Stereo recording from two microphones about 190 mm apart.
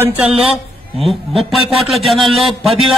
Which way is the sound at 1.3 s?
Centre (ahead or behind).